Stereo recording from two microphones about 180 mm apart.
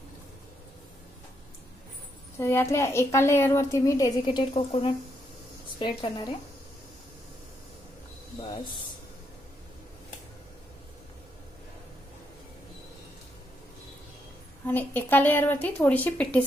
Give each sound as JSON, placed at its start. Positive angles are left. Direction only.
{"t": 2.3, "sound": "a woman's voice", "side_deg": 15}
{"t": 14.7, "sound": "a woman's voice", "side_deg": 10}